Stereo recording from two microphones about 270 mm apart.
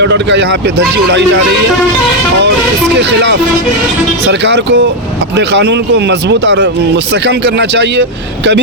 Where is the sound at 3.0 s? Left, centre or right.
Right.